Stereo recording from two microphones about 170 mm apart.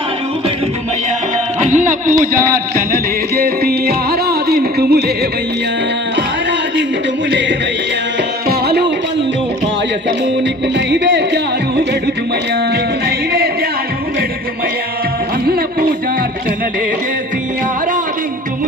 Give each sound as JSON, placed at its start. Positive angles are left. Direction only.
{"t": 1.6, "sound": "music", "side_deg": -50}
{"t": 2.7, "sound": "music", "side_deg": -60}
{"t": 7.3, "sound": "music", "side_deg": -90}
{"t": 8.4, "sound": "music", "side_deg": -70}
{"t": 10.8, "sound": "music", "side_deg": -90}
{"t": 12.7, "sound": "music", "side_deg": -65}
{"t": 15.4, "sound": "a sound", "side_deg": -60}